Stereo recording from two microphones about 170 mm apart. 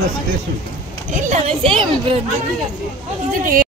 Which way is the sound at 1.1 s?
45° right (ahead or behind).